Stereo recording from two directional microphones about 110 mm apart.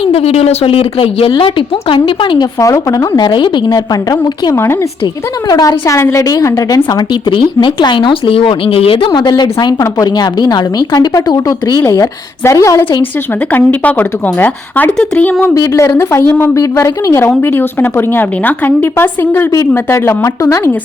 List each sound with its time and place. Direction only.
0.0 s a woman's voice: 60° left (ahead or behind)
2.6 s a woman's voice: 30° left (ahead or behind)
4.5 s a woman's voice: 20° left (ahead or behind)
5.5 s a woman's voice: 35° left (ahead or behind)
7.3 s a woman's voice: 50° left (ahead or behind); by 12.8 s 30° left (ahead or behind)
13.5 s speech: 15° left (ahead or behind)
15.5 s a woman's voice: 30° left (ahead or behind)